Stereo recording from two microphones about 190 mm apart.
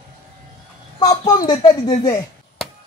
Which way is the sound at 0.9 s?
20° left (ahead or behind).